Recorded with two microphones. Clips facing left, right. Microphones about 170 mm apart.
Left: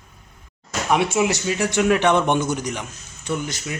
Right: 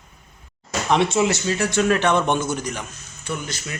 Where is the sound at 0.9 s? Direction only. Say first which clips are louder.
Right 1 dB; 10° left (ahead or behind).